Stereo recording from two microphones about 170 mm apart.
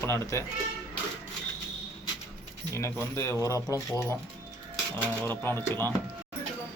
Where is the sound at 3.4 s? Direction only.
20° left (ahead or behind).